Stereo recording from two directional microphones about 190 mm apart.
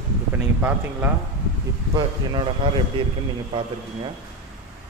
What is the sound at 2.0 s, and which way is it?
Speech, 25° right (ahead or behind).